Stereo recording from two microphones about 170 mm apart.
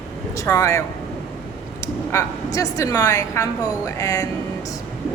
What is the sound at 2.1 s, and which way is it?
A woman's voice, 20° left (ahead or behind).